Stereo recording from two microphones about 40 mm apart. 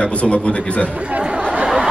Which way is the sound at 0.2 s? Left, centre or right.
Left.